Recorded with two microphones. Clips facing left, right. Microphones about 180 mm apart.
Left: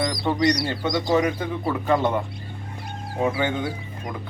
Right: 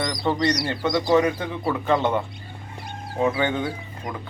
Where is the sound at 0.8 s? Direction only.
10° left (ahead or behind).